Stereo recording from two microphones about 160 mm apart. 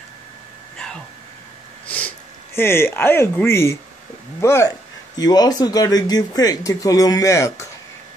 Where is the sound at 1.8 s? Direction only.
10° left (ahead or behind).